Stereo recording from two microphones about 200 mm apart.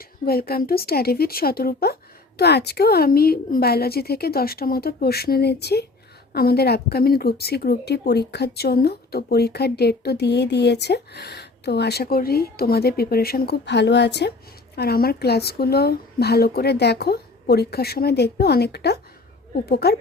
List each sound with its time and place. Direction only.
0.3 s speech: 50° left (ahead or behind)